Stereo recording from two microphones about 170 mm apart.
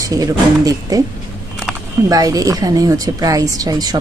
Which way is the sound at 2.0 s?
20° right (ahead or behind).